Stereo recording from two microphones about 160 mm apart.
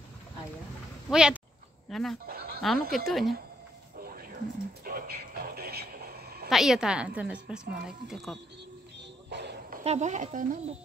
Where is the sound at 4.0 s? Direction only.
65° right (ahead or behind).